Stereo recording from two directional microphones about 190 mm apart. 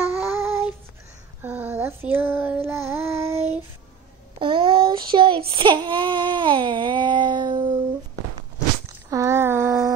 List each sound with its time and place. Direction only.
0.1 s child singing: 10° right (ahead or behind)
4.4 s child singing: 25° right (ahead or behind)
9.1 s a sound: 15° right (ahead or behind)